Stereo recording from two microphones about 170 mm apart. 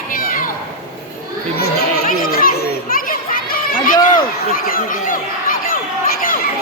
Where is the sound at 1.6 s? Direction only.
60° left (ahead or behind).